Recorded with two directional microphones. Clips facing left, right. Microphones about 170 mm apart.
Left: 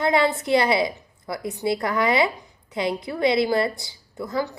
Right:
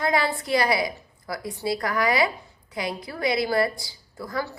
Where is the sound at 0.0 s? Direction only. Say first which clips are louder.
Left 4 dB; 25° left (ahead or behind).